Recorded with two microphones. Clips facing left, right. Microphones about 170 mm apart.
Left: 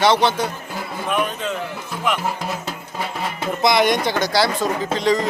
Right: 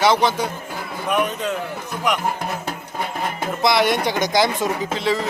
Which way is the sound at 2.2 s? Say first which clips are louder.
Right 1 dB; 55° right (ahead or behind).